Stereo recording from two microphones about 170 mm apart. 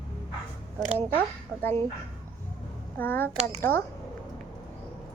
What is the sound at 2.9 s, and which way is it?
Speech, 10° left (ahead or behind).